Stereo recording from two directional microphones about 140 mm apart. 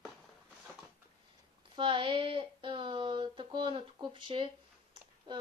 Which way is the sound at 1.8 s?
35° right (ahead or behind).